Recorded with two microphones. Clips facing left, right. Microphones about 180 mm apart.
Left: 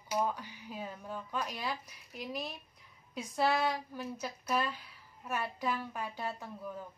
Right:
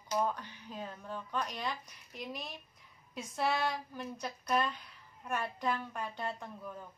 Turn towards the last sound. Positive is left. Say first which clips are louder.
# even
turn(degrees=5)  # may be behind; listen again after turning